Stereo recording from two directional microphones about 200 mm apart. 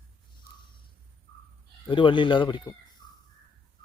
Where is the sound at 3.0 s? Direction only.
20° left (ahead or behind).